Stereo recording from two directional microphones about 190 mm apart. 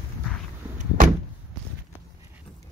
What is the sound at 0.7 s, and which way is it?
Door, 45° right (ahead or behind).